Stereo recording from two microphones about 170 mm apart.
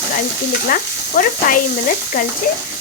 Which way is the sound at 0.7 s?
55° left (ahead or behind).